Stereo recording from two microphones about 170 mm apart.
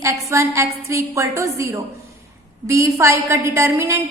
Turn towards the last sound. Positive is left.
turn(degrees=-15)  # may be behind; listen again after turning